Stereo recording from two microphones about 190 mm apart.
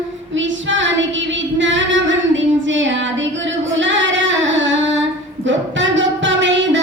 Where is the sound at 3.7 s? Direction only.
75° right (ahead or behind).